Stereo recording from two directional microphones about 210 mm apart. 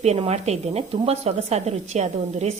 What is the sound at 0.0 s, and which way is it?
A woman's voice, 30° right (ahead or behind).